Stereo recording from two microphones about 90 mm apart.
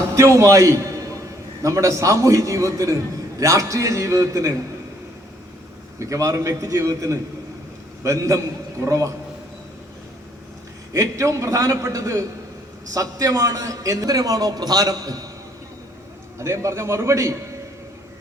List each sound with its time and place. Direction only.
0.2 s a man's voice: 35° right (ahead or behind)
6.0 s a man's voice: 35° right (ahead or behind)
10.9 s a man's voice: 35° right (ahead or behind)
16.4 s a man's voice: 30° right (ahead or behind)